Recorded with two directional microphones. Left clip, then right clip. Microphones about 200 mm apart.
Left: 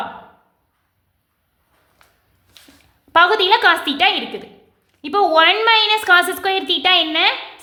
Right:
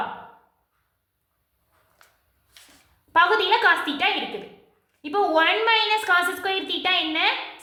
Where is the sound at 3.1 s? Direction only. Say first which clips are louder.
Left 6 dB; 45° left (ahead or behind).